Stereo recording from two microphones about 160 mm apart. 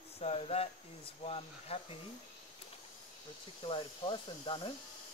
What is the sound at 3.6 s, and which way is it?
Speech, 30° left (ahead or behind).